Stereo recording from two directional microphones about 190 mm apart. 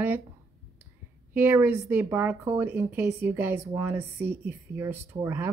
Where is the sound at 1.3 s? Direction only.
10° right (ahead or behind).